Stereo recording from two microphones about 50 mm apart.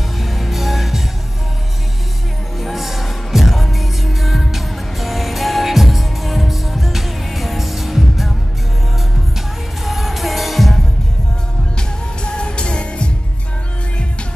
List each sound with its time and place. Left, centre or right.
0.2 s music: centre
2.6 s music: centre
9.8 s music: centre
12.2 s music: left